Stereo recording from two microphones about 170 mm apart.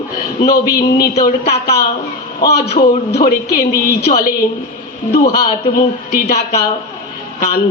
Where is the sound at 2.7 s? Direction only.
60° left (ahead or behind).